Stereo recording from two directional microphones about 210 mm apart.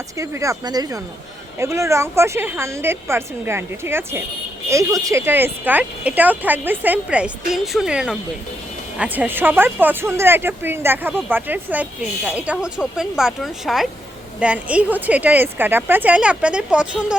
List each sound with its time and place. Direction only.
0.2 s speech: 15° right (ahead or behind)